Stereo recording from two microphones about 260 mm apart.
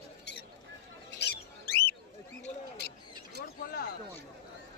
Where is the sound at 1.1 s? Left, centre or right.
Left.